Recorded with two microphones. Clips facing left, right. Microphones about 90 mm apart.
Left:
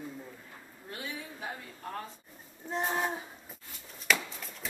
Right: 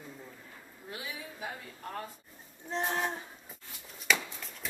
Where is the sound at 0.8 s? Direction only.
5° right (ahead or behind).